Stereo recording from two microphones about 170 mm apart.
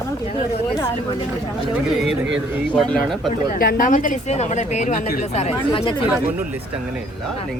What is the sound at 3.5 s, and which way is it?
Speech, 60° left (ahead or behind).